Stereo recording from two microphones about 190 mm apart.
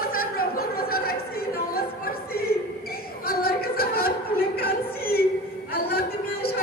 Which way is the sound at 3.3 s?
55° left (ahead or behind).